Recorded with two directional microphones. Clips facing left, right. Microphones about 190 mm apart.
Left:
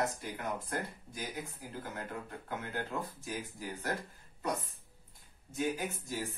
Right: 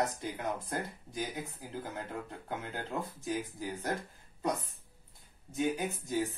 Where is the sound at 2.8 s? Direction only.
20° right (ahead or behind).